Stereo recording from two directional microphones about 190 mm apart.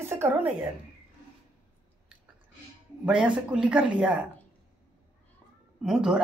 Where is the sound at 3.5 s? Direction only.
5° right (ahead or behind).